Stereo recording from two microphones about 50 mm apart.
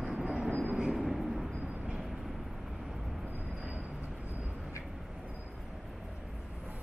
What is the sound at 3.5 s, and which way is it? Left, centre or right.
Train, centre.